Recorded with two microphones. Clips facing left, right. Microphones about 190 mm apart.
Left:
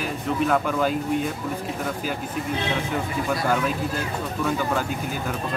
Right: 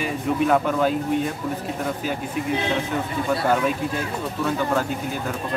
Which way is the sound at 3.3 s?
Centre (ahead or behind).